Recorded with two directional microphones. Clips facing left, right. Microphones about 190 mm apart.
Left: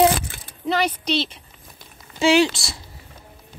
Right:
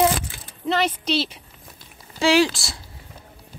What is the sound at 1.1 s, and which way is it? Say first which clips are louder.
Speech: even; 10° right (ahead or behind).